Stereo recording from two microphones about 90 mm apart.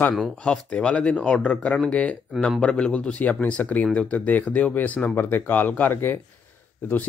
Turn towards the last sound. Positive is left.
turn(degrees=20)  # may be behind; listen again after turning